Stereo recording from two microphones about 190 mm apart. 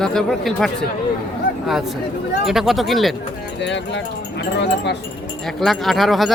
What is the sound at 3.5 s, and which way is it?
Speech, 70° left (ahead or behind).